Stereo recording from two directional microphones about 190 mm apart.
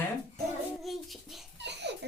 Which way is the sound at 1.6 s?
65° right (ahead or behind).